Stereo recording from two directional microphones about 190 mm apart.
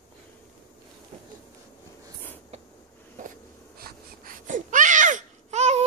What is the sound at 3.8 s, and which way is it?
Baby cry, 45° right (ahead or behind).